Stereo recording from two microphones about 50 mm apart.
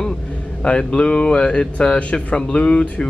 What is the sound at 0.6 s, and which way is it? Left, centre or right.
Speech, left.